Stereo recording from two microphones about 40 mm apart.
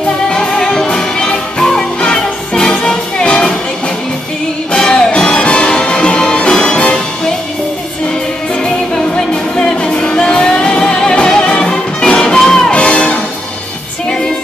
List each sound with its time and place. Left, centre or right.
0.3 s music: centre
4.7 s music: centre
9.1 s music: left
12.7 s music: left